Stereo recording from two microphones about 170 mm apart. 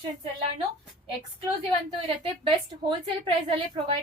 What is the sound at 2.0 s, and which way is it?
Speech, 30° right (ahead or behind).